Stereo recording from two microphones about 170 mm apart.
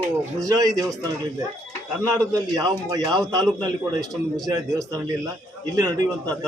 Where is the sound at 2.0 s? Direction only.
20° right (ahead or behind).